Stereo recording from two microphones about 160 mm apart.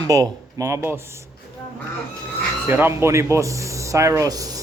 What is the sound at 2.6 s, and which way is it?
Speech, 15° right (ahead or behind).